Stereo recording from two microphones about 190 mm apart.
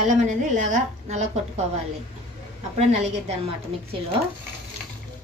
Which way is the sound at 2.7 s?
35° right (ahead or behind).